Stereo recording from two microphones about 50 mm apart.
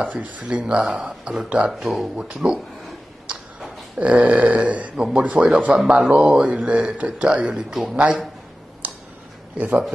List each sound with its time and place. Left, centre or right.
0.0 s speech: right
1.7 s speech: centre
2.1 s speech: centre
4.0 s speech: right
4.9 s speech: centre
5.2 s speech: right
5.9 s speech: centre
6.4 s speech: right
8.8 s a sound: right
9.6 s speech: right